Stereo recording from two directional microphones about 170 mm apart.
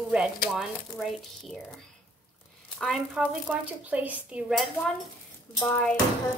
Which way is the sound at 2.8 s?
Centre (ahead or behind).